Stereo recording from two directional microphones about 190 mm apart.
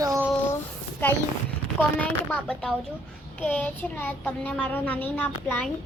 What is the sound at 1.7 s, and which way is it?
A child's voice, 10° left (ahead or behind).